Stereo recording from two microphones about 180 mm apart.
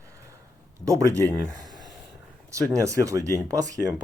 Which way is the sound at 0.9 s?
20° right (ahead or behind).